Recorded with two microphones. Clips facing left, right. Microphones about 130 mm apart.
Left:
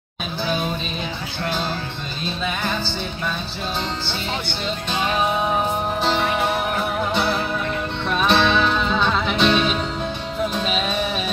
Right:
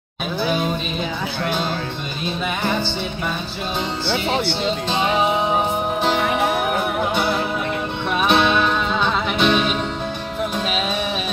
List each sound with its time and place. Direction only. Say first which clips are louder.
4.9 s music: right 1 dB; 20° right (ahead or behind)
8.2 s music: right 1 dB; 10° right (ahead or behind)